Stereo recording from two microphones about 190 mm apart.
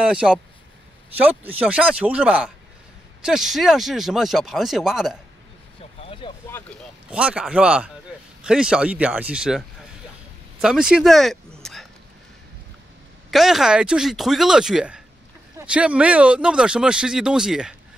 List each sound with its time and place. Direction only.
0.0 s speech: 5° right (ahead or behind)
1.4 s speech: 10° right (ahead or behind)
5.9 s vehicle: 30° left (ahead or behind)
7.1 s speech: 5° right (ahead or behind)
10.6 s a sound: 5° right (ahead or behind)
13.3 s speech: centre (ahead or behind)